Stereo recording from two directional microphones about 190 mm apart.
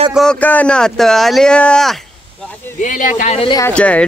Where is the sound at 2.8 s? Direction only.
45° left (ahead or behind).